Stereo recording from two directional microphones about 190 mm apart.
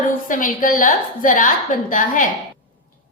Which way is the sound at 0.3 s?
45° left (ahead or behind).